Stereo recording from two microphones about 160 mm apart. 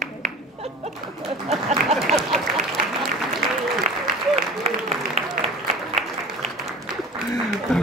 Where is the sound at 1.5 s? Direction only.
40° right (ahead or behind).